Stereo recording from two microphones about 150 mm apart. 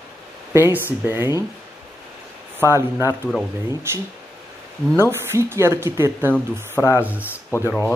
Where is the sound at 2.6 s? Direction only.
15° right (ahead or behind).